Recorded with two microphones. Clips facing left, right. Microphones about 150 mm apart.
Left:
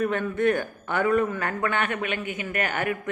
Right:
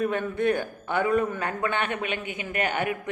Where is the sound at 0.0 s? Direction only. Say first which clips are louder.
Left 2 dB; 20° right (ahead or behind).